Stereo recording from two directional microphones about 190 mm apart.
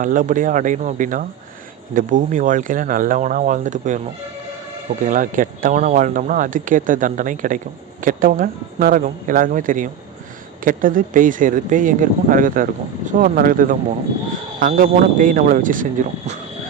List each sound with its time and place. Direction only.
0.0 s speech: 45° right (ahead or behind)
5.0 s speech: 45° right (ahead or behind)